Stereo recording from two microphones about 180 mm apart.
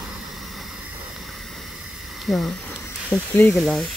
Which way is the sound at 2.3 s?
Centre (ahead or behind).